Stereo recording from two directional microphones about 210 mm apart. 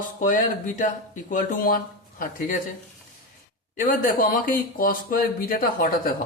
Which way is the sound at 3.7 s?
40° left (ahead or behind).